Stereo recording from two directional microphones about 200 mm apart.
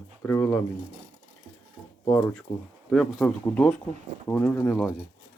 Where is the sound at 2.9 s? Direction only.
5° left (ahead or behind).